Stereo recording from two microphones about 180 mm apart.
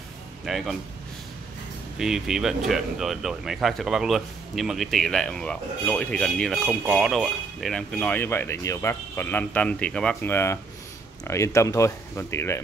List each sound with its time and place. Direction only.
0.5 s speech: centre (ahead or behind)
2.0 s speech: 5° right (ahead or behind); by 12.5 s 15° left (ahead or behind)